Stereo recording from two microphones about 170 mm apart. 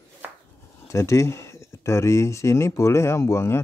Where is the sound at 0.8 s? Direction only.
15° left (ahead or behind).